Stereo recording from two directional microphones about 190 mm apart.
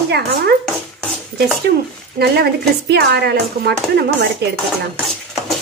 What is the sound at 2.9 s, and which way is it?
Speech, 55° right (ahead or behind).